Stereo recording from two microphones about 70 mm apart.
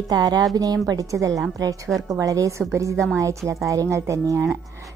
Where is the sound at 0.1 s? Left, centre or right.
Right.